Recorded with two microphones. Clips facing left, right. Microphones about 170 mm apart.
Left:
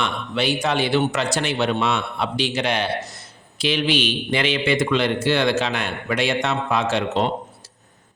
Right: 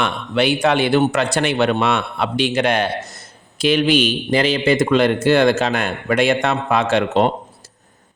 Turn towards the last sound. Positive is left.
turn(degrees=-55)  # may be behind; listen again after turning